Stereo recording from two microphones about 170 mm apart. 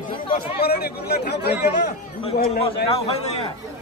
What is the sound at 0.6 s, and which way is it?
Speech, 65° left (ahead or behind).